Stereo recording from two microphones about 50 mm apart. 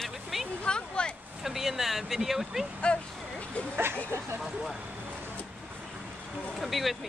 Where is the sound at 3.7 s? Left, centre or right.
Right.